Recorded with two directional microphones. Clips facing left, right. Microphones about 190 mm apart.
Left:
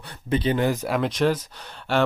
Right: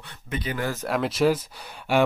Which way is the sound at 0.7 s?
Centre (ahead or behind).